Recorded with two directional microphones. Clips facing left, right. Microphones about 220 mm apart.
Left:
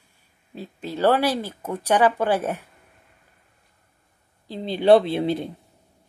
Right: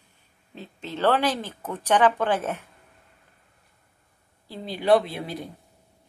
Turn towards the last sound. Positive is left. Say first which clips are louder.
# left 10 dB
turn(degrees=25)  # may be behind; listen again after turning